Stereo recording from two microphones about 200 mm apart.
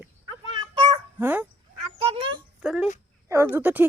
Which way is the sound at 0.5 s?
25° right (ahead or behind).